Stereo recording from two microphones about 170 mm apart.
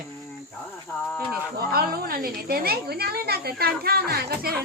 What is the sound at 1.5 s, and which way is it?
A woman's voice, 60° right (ahead or behind).